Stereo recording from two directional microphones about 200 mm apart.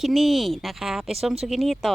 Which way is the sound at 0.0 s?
Centre (ahead or behind).